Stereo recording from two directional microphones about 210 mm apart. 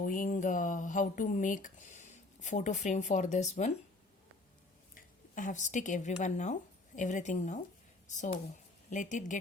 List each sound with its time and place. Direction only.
0.0 s speech: 40° left (ahead or behind)
4.9 s speech: 35° left (ahead or behind)